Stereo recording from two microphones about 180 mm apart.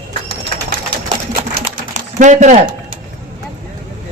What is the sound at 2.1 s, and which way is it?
Speech, 45° right (ahead or behind).